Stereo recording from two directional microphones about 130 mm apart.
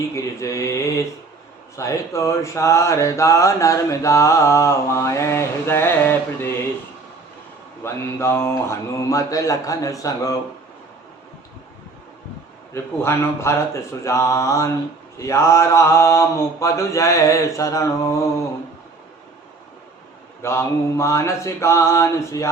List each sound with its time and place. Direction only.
0.1 s mantra: 25° left (ahead or behind)
7.9 s mantra: 20° left (ahead or behind)
12.7 s mantra: 20° left (ahead or behind)
20.4 s mantra: 20° left (ahead or behind)